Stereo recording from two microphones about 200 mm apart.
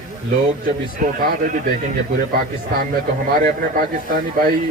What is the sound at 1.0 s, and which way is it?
Speech, 40° right (ahead or behind).